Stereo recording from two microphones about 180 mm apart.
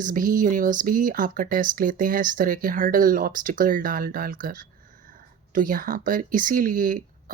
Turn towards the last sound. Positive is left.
turn(degrees=-50)  # may be behind; listen again after turning